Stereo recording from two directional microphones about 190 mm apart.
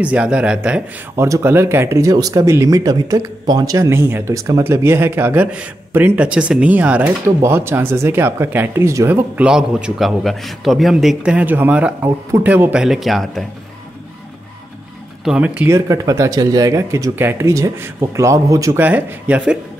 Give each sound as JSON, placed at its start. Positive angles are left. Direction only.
{"t": 0.0, "sound": "speech", "side_deg": -5}
{"t": 15.2, "sound": "speech", "side_deg": -5}